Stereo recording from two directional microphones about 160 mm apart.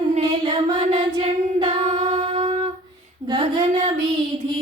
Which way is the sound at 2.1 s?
35° right (ahead or behind).